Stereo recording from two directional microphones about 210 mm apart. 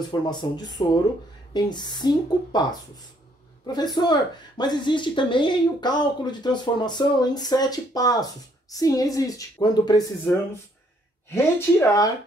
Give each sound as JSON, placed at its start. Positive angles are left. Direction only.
{"t": 0.1, "sound": "speech", "side_deg": 20}